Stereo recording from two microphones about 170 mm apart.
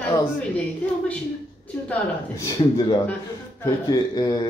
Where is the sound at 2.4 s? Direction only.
20° left (ahead or behind).